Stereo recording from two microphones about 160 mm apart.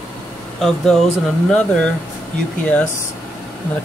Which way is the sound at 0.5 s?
5° left (ahead or behind).